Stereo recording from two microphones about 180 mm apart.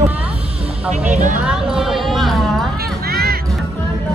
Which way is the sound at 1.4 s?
Centre (ahead or behind).